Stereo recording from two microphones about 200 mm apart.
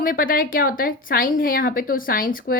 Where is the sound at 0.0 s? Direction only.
45° left (ahead or behind).